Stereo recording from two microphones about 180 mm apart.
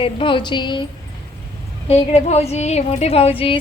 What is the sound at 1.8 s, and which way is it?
A woman's voice, 35° left (ahead or behind).